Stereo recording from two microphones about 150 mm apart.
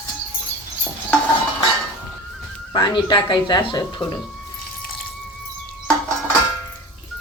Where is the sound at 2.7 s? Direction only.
30° left (ahead or behind).